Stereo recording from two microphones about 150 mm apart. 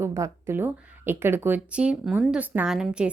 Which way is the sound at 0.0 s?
20° right (ahead or behind).